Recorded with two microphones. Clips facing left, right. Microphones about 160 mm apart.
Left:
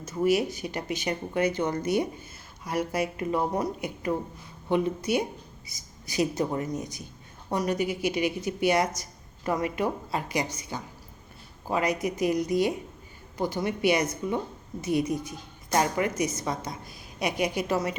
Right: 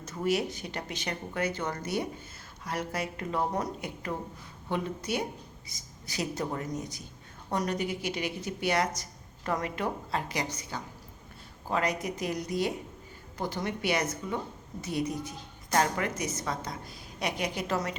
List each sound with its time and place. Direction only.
0.0 s a woman's voice: 10° left (ahead or behind)